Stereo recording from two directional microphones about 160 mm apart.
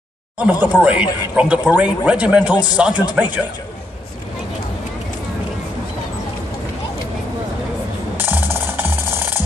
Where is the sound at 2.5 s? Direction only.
25° left (ahead or behind).